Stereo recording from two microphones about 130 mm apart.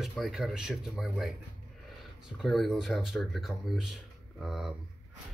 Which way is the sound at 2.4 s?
Centre (ahead or behind).